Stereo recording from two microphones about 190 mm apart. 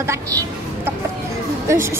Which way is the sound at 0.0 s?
15° right (ahead or behind).